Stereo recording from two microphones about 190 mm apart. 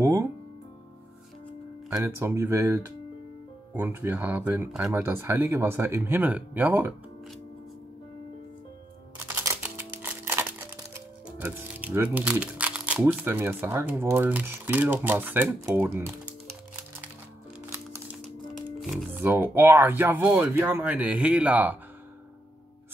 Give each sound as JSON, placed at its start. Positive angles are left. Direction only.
{"t": 0.0, "sound": "music", "side_deg": -15}
{"t": 1.9, "sound": "speech", "side_deg": -15}
{"t": 9.3, "sound": "music", "side_deg": -10}
{"t": 10.9, "sound": "speech", "side_deg": -10}
{"t": 18.8, "sound": "speech", "side_deg": -5}